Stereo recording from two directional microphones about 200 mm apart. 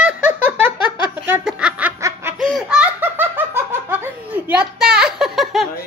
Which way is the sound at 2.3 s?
Centre (ahead or behind).